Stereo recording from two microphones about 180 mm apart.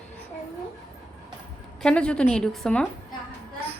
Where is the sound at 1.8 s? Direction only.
5° left (ahead or behind).